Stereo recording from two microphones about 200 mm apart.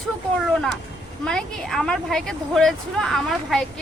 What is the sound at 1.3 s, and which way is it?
A woman's voice, 5° left (ahead or behind).